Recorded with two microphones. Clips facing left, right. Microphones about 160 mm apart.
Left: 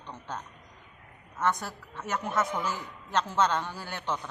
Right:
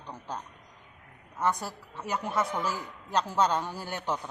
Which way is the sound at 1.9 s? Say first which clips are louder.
Even; 10° right (ahead or behind).